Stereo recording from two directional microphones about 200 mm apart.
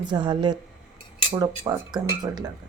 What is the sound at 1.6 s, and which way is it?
Speech, 20° right (ahead or behind).